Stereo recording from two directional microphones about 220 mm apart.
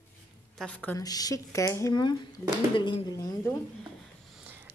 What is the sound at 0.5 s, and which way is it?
A woman's voice, 5° left (ahead or behind).